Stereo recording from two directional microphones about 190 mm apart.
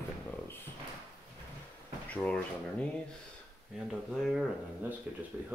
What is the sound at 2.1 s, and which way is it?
Speech, 5° left (ahead or behind).